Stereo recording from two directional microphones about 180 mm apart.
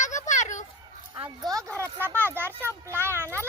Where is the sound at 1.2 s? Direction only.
20° right (ahead or behind).